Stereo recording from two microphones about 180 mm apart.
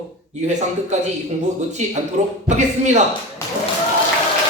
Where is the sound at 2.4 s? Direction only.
40° right (ahead or behind).